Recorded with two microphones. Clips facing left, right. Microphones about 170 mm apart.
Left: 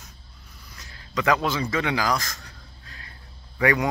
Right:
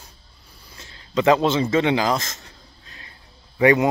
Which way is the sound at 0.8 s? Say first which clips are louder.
Right 6 dB; 25° right (ahead or behind).